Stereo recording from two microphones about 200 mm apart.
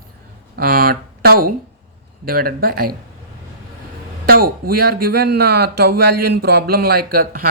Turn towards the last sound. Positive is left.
turn(degrees=-50)  # may be behind; listen again after turning